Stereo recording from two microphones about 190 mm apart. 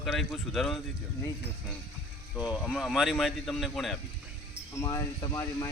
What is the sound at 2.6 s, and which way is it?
Speech, centre (ahead or behind).